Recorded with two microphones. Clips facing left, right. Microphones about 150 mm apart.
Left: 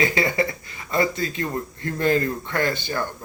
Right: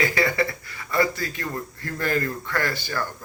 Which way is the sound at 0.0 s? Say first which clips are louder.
Left 1 dB; 20° left (ahead or behind).